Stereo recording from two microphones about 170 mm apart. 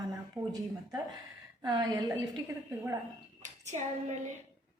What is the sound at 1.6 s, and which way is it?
A woman's voice, 20° right (ahead or behind).